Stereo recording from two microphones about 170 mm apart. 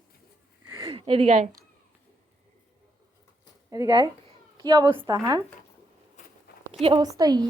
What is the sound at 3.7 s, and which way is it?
A woman's voice, 25° right (ahead or behind).